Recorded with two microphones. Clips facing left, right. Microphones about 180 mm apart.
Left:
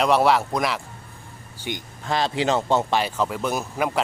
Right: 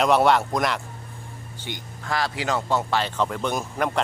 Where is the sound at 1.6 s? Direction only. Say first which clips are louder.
Left 5 dB; 20° left (ahead or behind).